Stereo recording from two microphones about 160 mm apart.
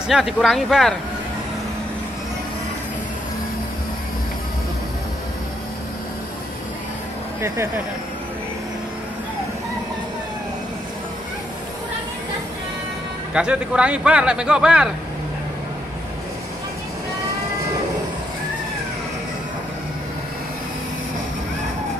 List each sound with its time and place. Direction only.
0.1 s speech: centre (ahead or behind)
7.4 s speech: 15° right (ahead or behind)
13.3 s speech: 5° right (ahead or behind)